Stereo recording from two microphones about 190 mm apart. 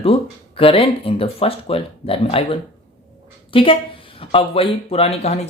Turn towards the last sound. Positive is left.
turn(degrees=35)  # may be behind; listen again after turning